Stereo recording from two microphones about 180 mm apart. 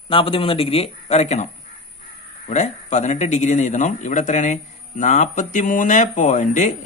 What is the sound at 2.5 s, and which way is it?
A man's voice, 40° left (ahead or behind).